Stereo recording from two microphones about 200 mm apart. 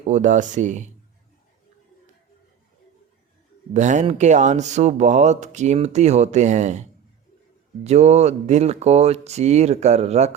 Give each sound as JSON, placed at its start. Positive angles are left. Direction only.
{"t": 0.1, "sound": "speech", "side_deg": -40}
{"t": 3.8, "sound": "speech", "side_deg": -35}
{"t": 7.9, "sound": "speech", "side_deg": -35}